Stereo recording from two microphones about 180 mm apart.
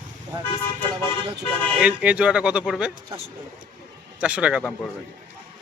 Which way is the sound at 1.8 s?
5° right (ahead or behind).